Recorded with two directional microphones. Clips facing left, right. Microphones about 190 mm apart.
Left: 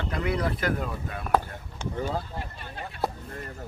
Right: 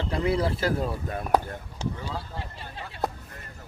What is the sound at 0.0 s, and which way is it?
Speech, 30° right (ahead or behind).